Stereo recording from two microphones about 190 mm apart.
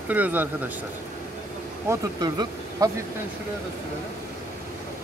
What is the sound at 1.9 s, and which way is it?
Speech, 20° right (ahead or behind).